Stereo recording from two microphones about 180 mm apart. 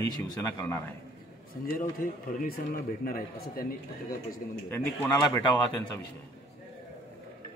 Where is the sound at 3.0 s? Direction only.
55° left (ahead or behind).